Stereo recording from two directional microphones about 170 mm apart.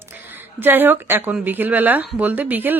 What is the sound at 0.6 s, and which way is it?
A woman's voice, 10° right (ahead or behind).